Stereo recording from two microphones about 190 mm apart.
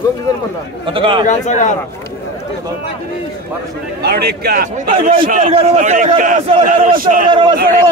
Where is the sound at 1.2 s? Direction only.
40° left (ahead or behind).